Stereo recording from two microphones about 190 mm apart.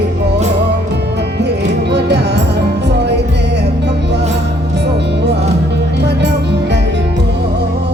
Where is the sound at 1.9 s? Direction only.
65° right (ahead or behind).